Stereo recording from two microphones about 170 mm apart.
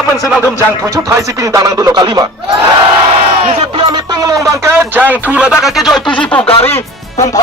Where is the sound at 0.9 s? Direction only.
20° right (ahead or behind).